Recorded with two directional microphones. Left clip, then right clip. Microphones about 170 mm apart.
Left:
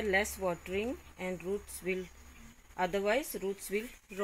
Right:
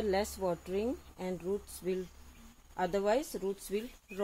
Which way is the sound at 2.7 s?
20° right (ahead or behind).